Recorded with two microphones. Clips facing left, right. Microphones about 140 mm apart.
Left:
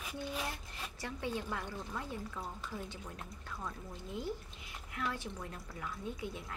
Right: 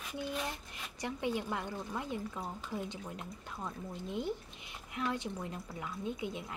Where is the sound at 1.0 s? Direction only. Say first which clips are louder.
Right 4 dB; 15° right (ahead or behind).